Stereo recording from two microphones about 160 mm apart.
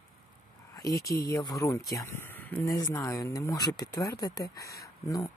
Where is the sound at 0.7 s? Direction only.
20° left (ahead or behind).